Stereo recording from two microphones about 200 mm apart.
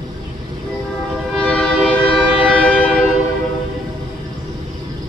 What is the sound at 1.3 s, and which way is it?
Train, centre (ahead or behind).